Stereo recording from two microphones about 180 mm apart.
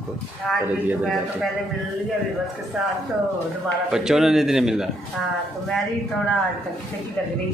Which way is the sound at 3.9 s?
5° right (ahead or behind).